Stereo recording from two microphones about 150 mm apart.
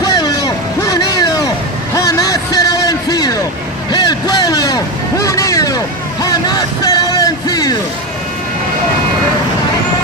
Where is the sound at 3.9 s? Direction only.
30° left (ahead or behind).